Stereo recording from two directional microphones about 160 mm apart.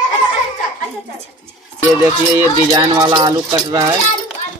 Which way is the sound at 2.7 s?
25° right (ahead or behind).